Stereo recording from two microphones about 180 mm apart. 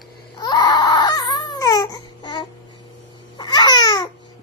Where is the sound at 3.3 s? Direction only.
25° left (ahead or behind).